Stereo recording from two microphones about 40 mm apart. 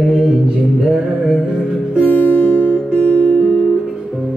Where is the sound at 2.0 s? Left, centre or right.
Left.